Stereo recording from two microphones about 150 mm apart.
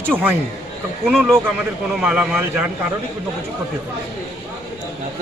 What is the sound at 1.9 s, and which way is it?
Speech, 5° right (ahead or behind).